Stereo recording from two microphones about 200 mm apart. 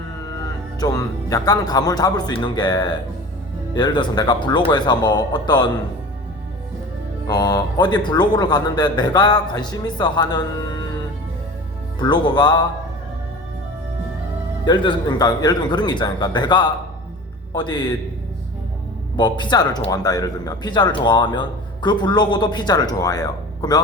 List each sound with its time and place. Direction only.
0.8 s speech: 20° left (ahead or behind)
7.3 s speech: 20° left (ahead or behind)
11.9 s speech: 20° left (ahead or behind)
14.6 s speech: 20° left (ahead or behind)
19.1 s speech: 20° left (ahead or behind)